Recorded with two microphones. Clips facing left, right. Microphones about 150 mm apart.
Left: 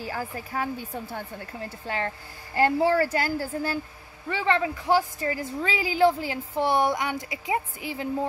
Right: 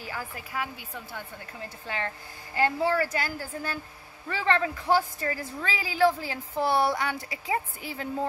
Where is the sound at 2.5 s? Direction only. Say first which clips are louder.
Left 4 dB; 35° left (ahead or behind).